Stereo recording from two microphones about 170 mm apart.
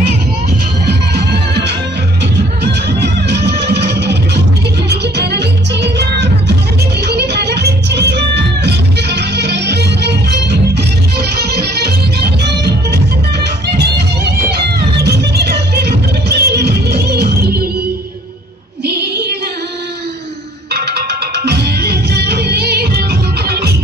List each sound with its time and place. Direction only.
0.8 s music: 75° right (ahead or behind)
18.9 s female singing: 75° right (ahead or behind)
20.7 s music: 70° right (ahead or behind)